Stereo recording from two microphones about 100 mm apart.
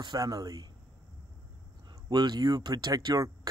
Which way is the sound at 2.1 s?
45° right (ahead or behind).